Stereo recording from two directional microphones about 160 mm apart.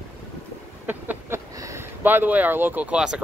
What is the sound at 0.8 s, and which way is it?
Speech, 15° right (ahead or behind).